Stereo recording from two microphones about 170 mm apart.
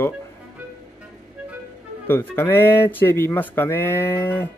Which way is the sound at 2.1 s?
15° left (ahead or behind).